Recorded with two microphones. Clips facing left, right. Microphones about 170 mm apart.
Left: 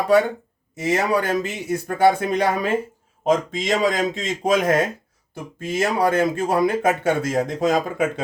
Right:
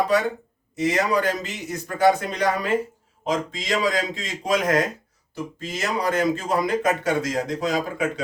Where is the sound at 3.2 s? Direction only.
50° left (ahead or behind).